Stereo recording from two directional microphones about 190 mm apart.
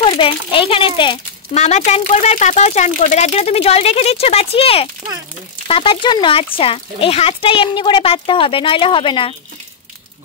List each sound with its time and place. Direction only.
0.0 s a child's voice: 25° left (ahead or behind)